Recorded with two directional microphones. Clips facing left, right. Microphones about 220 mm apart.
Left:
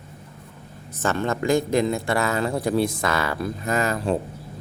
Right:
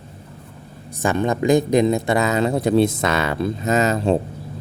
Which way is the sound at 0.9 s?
15° right (ahead or behind).